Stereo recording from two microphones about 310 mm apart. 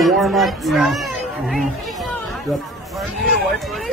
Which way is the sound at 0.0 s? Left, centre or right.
Centre.